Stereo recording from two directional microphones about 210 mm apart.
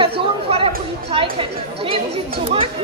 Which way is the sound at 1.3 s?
25° right (ahead or behind).